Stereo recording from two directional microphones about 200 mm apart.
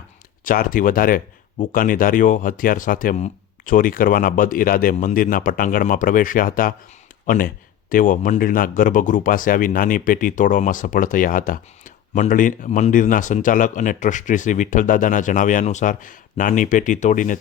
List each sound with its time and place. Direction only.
0.4 s speech: 45° left (ahead or behind)